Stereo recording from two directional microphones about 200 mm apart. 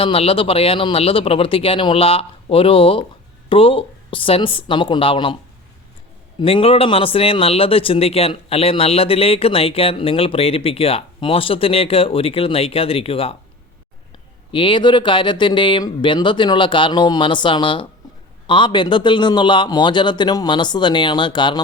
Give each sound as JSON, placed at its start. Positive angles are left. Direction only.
{"t": 0.0, "sound": "speech", "side_deg": 25}
{"t": 6.4, "sound": "speech", "side_deg": 30}
{"t": 14.5, "sound": "speech", "side_deg": 25}